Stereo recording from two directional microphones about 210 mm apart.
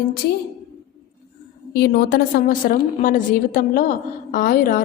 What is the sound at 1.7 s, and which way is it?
A woman's voice, 50° left (ahead or behind).